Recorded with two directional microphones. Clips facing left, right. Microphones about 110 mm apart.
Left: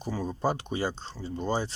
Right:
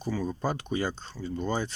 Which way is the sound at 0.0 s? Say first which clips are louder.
Left 1 dB; 30° left (ahead or behind).